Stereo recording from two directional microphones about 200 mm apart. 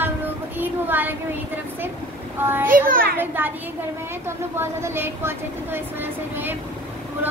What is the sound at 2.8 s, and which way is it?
Speech, 45° right (ahead or behind).